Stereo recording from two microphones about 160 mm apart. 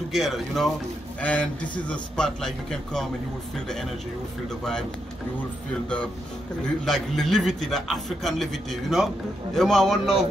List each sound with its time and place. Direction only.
0.1 s a man's voice: centre (ahead or behind)
4.5 s a man's voice: 5° left (ahead or behind)
6.8 s a man's voice: centre (ahead or behind)